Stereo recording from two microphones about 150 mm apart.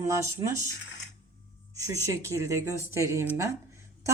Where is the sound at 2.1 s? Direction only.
20° right (ahead or behind).